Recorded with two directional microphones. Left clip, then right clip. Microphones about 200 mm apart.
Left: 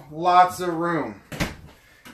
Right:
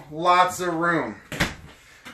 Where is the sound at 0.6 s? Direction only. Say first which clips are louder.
Right 2 dB; 25° left (ahead or behind).